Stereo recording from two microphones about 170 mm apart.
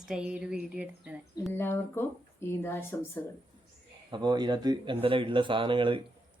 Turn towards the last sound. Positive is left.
turn(degrees=-30)  # may be behind; listen again after turning